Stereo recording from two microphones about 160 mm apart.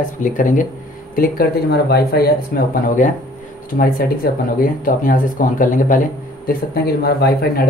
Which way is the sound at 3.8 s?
65° left (ahead or behind).